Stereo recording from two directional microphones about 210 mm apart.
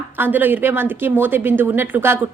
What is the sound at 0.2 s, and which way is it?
A woman's voice, 10° right (ahead or behind).